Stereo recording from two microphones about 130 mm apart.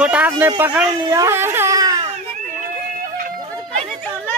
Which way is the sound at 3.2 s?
90° right.